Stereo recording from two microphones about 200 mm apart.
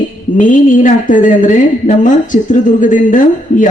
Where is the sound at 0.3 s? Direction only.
40° left (ahead or behind).